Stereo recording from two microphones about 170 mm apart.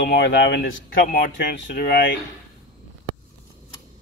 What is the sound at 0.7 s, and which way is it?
Speech, 55° left (ahead or behind).